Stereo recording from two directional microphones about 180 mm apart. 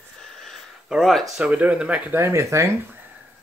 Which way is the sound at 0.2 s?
Centre (ahead or behind).